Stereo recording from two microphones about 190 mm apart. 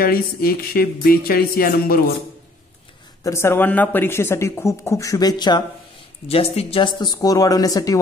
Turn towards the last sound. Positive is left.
turn(degrees=20)  # may be behind; listen again after turning